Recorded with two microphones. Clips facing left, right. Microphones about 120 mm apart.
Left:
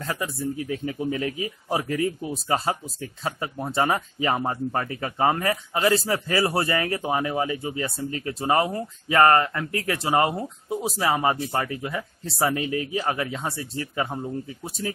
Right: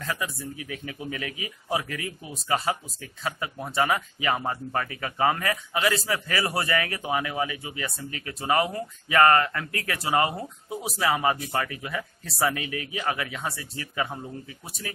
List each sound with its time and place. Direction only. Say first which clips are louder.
0.0 s speech: left 3 dB; 30° left (ahead or behind)